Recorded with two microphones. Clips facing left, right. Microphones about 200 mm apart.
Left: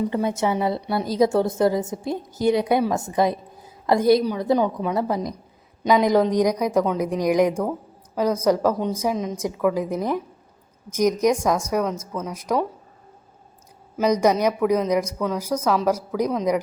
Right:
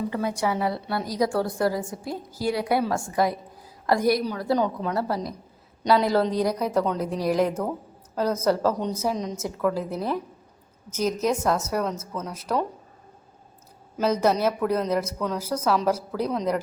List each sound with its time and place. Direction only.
0.1 s a woman's voice: 25° left (ahead or behind)
13.9 s a woman's voice: 15° left (ahead or behind)